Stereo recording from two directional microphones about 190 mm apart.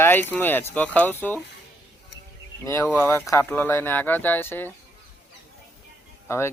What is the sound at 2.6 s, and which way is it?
Speech, 15° left (ahead or behind).